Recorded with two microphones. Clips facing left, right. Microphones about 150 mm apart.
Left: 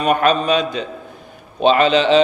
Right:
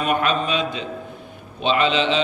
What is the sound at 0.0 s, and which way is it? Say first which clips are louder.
A man's voice: left 5 dB; 40° left (ahead or behind).